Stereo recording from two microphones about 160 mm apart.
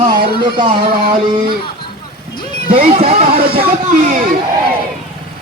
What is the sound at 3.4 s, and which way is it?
Speech, 70° right (ahead or behind).